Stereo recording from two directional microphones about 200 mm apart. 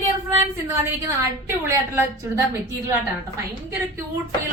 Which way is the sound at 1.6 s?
15° right (ahead or behind).